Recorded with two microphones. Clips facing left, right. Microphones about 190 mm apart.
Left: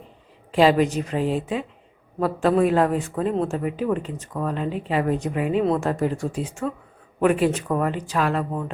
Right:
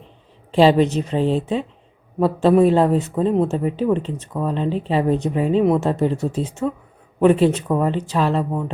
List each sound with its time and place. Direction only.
0.5 s a woman's voice: 30° right (ahead or behind)